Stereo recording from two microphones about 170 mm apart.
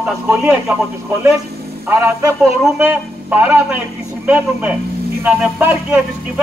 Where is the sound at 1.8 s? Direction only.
15° right (ahead or behind).